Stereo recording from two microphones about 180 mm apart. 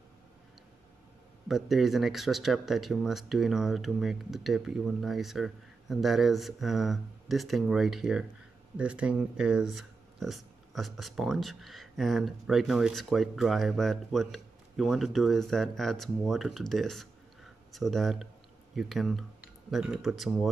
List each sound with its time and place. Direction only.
1.5 s speech: centre (ahead or behind)